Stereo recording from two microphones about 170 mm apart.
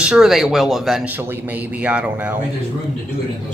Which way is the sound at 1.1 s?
10° right (ahead or behind).